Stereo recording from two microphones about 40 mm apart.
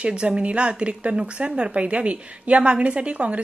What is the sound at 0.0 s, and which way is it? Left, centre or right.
A woman's voice, right.